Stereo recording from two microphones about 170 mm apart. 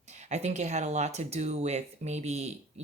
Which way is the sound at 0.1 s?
40° right (ahead or behind).